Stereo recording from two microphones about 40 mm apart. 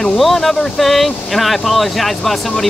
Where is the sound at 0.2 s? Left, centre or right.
Centre.